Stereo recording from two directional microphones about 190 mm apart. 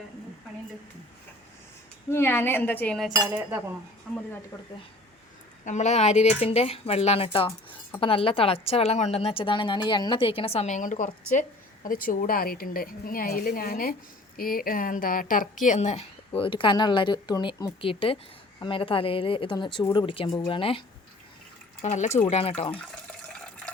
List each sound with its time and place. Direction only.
2.0 s speech: 10° left (ahead or behind)
3.1 s cutlery: 10° right (ahead or behind)
4.1 s speech: centre (ahead or behind)
4.5 s speech: 10° left (ahead or behind)
5.6 s a woman's voice: 40° left (ahead or behind)
16.4 s a woman's voice: 25° left (ahead or behind)
21.8 s a woman's voice: 40° left (ahead or behind)
23.4 s water: 5° left (ahead or behind)